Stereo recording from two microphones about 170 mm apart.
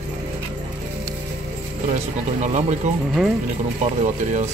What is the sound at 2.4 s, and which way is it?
Speech, 45° right (ahead or behind).